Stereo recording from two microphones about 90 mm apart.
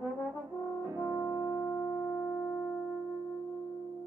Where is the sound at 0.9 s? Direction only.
25° right (ahead or behind).